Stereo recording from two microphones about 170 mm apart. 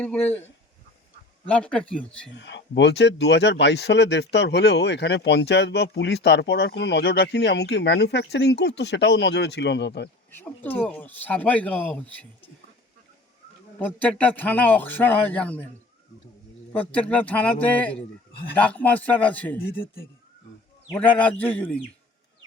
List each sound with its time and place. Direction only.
0.0 s speech: 10° left (ahead or behind)
1.5 s speech: 5° left (ahead or behind)
2.3 s speech: 90° left
10.3 s speech: 10° left (ahead or behind)
13.7 s speech: 10° left (ahead or behind)
16.9 s speech: 10° left (ahead or behind)
20.9 s speech: 10° left (ahead or behind)